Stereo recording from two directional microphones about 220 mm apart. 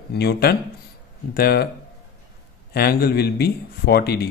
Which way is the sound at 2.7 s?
45° left (ahead or behind).